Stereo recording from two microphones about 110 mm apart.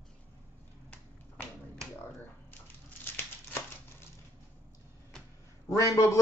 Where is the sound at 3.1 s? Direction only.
20° left (ahead or behind).